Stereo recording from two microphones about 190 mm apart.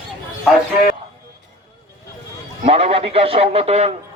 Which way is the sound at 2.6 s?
35° right (ahead or behind).